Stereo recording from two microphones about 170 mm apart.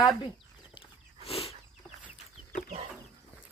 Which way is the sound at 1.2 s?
35° left (ahead or behind).